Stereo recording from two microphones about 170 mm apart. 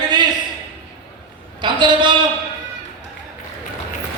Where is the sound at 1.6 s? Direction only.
25° right (ahead or behind).